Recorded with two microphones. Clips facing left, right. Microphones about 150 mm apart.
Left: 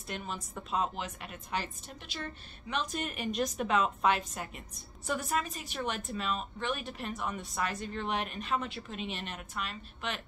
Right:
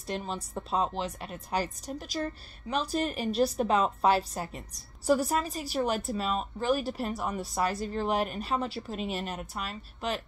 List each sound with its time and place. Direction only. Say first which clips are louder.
0.0 s speech: right 5 dB; 35° right (ahead or behind)